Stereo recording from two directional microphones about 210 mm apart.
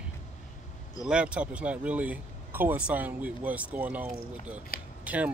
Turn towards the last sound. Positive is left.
turn(degrees=-5)  # may be behind; listen again after turning